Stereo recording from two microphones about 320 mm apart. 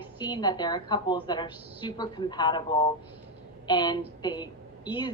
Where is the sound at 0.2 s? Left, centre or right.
Centre.